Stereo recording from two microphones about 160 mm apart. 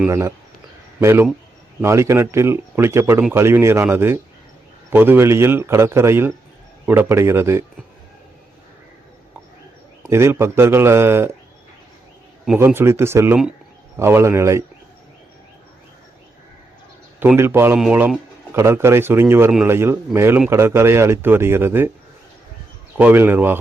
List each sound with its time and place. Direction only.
0.1 s speech: 20° right (ahead or behind)
10.0 s speech: 15° right (ahead or behind)
12.5 s speech: 15° right (ahead or behind)
17.2 s speech: 15° right (ahead or behind)
23.0 s speech: 10° right (ahead or behind)